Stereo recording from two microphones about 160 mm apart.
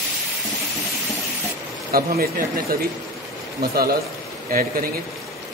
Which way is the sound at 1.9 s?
65° right (ahead or behind).